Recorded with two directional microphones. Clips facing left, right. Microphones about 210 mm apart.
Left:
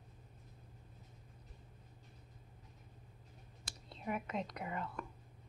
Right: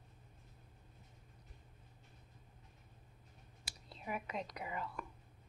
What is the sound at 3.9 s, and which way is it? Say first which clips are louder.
Whispering: left 3 dB; centre (ahead or behind).